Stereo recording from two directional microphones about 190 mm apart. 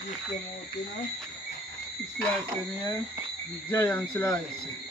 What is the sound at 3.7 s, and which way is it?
Speech, 10° left (ahead or behind).